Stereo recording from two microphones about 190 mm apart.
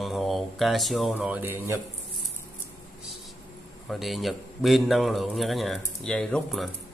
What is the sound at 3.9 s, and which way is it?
Speech, centre (ahead or behind).